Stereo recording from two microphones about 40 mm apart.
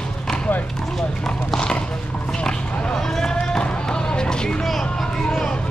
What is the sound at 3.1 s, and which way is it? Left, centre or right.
Run, centre.